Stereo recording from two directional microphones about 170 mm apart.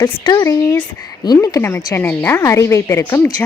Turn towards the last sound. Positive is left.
turn(degrees=15)  # may be behind; listen again after turning